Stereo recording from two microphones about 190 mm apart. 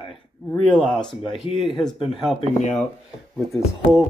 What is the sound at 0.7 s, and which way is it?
Speech, centre (ahead or behind).